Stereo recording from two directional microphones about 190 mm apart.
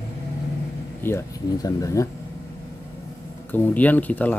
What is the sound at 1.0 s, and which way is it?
Speech, 15° left (ahead or behind).